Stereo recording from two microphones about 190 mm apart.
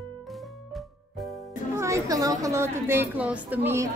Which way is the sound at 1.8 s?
15° right (ahead or behind).